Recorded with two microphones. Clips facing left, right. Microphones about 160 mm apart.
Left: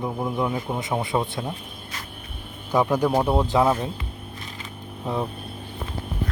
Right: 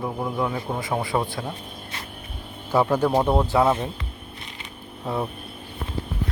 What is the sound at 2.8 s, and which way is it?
Speech, 15° left (ahead or behind).